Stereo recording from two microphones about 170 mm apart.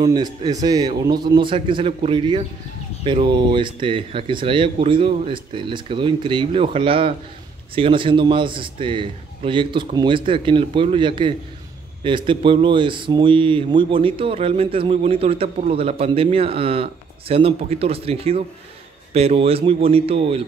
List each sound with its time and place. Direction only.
0.0 s a man's voice: 25° right (ahead or behind)